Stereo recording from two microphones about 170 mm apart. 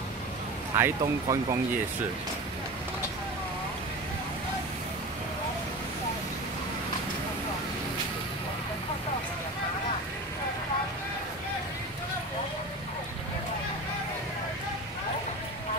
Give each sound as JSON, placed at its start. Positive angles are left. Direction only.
{"t": 0.7, "sound": "speech", "side_deg": -20}